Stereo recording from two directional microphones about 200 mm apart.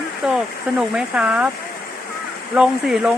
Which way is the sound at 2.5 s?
Centre (ahead or behind).